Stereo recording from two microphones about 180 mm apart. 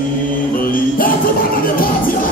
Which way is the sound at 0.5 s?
50° left (ahead or behind).